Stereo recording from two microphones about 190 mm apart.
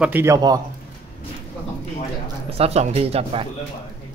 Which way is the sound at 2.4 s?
30° right (ahead or behind).